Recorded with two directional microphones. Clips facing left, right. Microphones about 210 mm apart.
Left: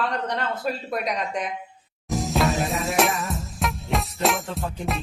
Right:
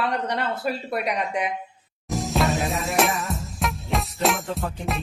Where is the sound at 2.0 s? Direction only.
Centre (ahead or behind).